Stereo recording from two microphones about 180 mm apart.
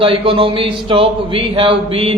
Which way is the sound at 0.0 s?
30° right (ahead or behind).